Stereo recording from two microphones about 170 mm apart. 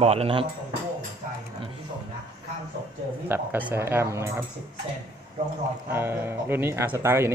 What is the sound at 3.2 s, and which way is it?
Speech, 10° right (ahead or behind).